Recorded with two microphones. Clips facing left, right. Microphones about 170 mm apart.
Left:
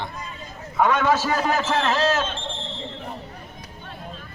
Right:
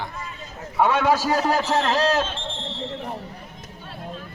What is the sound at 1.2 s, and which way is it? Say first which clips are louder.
A man's voice: right 1 dB; 35° right (ahead or behind).